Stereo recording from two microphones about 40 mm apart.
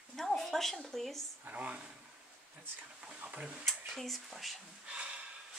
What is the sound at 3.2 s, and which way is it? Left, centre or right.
Speech, right.